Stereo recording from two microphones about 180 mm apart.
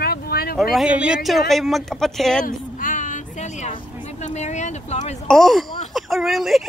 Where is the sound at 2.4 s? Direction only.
50° left (ahead or behind).